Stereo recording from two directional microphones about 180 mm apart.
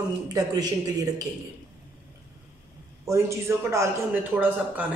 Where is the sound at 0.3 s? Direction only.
20° right (ahead or behind).